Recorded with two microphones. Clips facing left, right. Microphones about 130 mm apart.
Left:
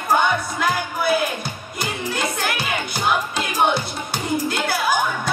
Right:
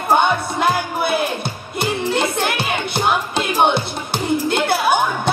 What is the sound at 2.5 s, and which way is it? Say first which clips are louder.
Music: right 4 dB; 65° right (ahead or behind).